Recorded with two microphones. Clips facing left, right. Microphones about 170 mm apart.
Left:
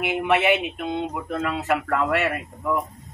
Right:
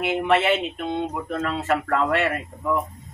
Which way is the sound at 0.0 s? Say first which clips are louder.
Right 1 dB; 15° left (ahead or behind).